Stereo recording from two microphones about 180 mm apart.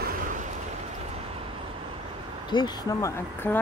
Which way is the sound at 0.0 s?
45° right (ahead or behind).